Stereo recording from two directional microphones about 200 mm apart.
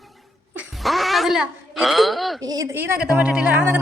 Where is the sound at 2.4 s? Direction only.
20° right (ahead or behind).